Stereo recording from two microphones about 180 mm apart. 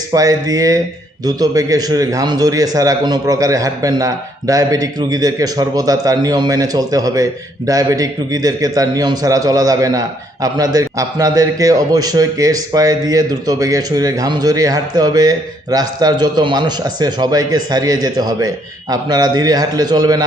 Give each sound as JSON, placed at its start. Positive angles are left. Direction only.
{"t": 0.1, "sound": "a man's voice", "side_deg": -20}